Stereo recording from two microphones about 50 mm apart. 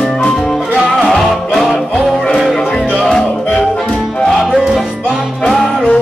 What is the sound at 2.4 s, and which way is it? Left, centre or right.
Music, centre.